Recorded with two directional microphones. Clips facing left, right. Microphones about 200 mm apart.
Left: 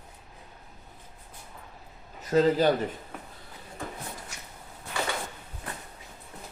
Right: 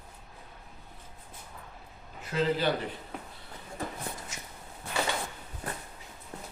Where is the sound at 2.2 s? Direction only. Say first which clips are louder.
Left 6 dB; 40° left (ahead or behind).